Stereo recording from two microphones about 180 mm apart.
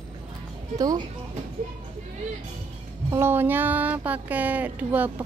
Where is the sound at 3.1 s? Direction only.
15° right (ahead or behind).